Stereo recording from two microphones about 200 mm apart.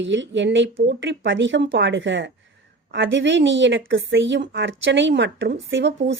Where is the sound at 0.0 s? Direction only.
65° right (ahead or behind).